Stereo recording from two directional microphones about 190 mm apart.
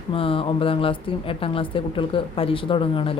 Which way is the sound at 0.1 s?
30° left (ahead or behind).